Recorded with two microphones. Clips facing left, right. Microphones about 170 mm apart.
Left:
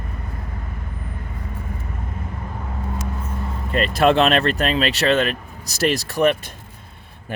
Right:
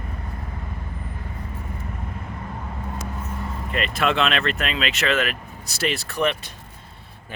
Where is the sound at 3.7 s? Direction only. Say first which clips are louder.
Left 7 dB; 35° left (ahead or behind).